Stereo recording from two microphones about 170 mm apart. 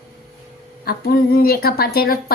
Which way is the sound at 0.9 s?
65° left (ahead or behind).